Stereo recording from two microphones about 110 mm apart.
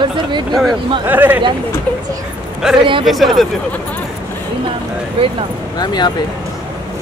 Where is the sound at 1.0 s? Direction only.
15° right (ahead or behind).